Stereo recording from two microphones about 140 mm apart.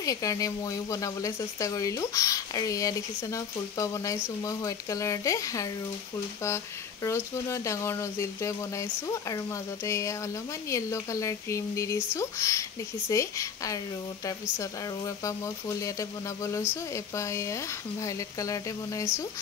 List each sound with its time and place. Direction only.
0.0 s speech: 25° left (ahead or behind)